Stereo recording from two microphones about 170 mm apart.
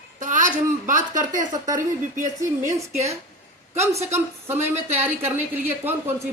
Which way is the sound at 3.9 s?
15° right (ahead or behind).